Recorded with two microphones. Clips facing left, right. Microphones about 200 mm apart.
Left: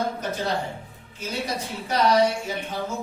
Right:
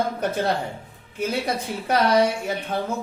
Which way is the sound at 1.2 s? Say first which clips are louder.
Right 5 dB; 60° right (ahead or behind).